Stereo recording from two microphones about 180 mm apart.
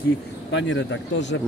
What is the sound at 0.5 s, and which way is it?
Speech, 85° left.